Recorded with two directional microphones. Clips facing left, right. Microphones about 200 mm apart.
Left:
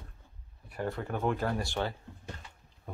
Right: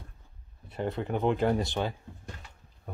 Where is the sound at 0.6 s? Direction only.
20° right (ahead or behind).